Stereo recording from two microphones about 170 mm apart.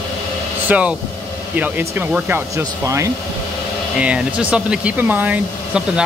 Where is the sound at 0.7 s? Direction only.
5° right (ahead or behind).